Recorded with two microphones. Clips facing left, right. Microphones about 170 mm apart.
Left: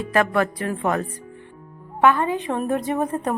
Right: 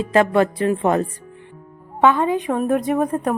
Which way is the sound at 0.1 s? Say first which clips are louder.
Right 4 dB; 25° right (ahead or behind).